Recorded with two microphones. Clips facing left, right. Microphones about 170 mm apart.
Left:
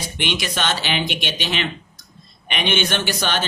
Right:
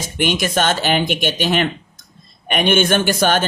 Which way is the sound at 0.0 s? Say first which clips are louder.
Right 6 dB; 45° right (ahead or behind).